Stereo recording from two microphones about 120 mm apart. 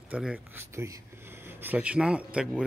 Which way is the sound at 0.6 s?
20° right (ahead or behind).